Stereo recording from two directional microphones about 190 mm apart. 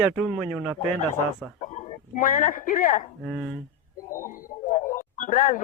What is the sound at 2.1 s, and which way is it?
Speech, 45° left (ahead or behind).